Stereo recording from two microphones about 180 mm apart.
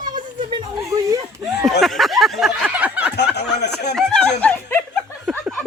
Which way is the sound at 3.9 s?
5° left (ahead or behind).